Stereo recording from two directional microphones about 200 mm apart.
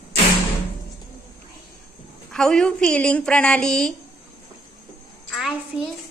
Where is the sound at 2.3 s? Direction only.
5° left (ahead or behind).